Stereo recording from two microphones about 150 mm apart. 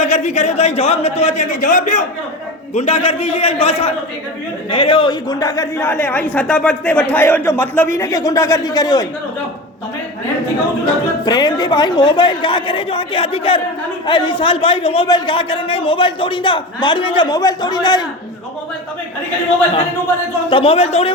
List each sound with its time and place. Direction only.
0.0 s a man's voice: 50° left (ahead or behind)
2.7 s a man's voice: 45° left (ahead or behind); by 9.0 s 25° left (ahead or behind)
11.3 s a man's voice: 30° left (ahead or behind)
20.5 s a man's voice: 40° left (ahead or behind)